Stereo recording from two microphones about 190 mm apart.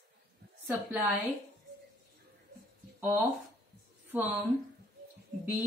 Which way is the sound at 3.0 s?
15° right (ahead or behind).